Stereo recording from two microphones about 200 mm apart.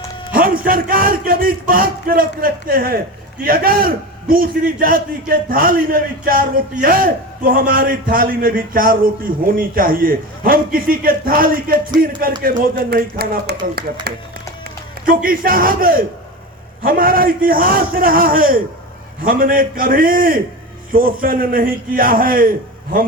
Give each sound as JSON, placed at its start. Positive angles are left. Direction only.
{"t": 0.3, "sound": "a man's voice", "side_deg": -45}
{"t": 15.0, "sound": "a man's voice", "side_deg": -45}